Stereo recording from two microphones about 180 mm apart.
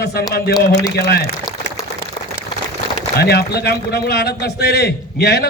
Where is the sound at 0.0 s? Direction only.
60° left (ahead or behind).